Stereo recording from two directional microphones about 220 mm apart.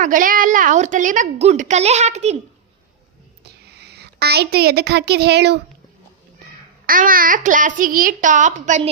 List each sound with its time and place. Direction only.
0.0 s a woman's voice: 35° right (ahead or behind)
3.7 s a woman's voice: 50° right (ahead or behind)
6.8 s a woman's voice: 40° right (ahead or behind)